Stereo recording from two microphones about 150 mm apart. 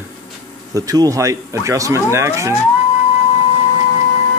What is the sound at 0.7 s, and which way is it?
Speech, 25° right (ahead or behind).